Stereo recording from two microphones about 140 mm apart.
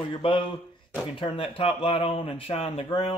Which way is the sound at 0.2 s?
35° left (ahead or behind).